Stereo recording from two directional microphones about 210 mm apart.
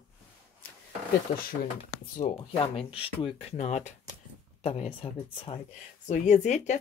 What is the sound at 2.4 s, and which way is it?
Speech, 25° left (ahead or behind).